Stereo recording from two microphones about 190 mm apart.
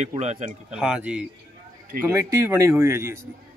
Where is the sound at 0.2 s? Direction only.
35° right (ahead or behind).